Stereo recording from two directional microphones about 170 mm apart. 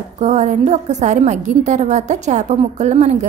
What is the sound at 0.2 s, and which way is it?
A woman's voice, 40° right (ahead or behind).